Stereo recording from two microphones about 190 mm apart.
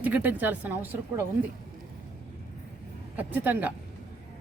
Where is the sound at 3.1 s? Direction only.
10° right (ahead or behind).